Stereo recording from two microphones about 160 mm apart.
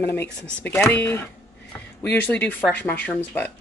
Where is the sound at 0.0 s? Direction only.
15° left (ahead or behind).